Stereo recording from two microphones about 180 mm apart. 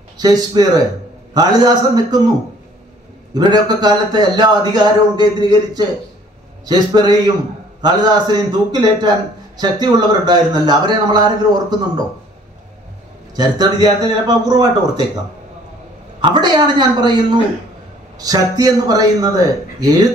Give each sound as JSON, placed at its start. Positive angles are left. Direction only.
{"t": 0.2, "sound": "a man's voice", "side_deg": -20}
{"t": 3.3, "sound": "a man's voice", "side_deg": -25}
{"t": 13.4, "sound": "a man's voice", "side_deg": -25}
{"t": 16.2, "sound": "a man's voice", "side_deg": -25}